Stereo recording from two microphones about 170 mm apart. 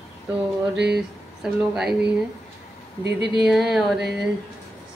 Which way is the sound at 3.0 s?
80° right.